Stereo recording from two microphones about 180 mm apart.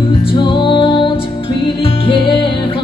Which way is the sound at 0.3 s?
25° left (ahead or behind).